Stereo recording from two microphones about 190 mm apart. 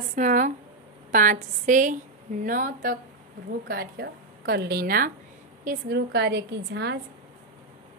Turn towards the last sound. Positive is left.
turn(degrees=-65)  # may be behind; listen again after turning